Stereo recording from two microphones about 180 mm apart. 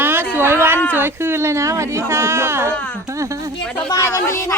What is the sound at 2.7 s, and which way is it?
Speech, 10° left (ahead or behind).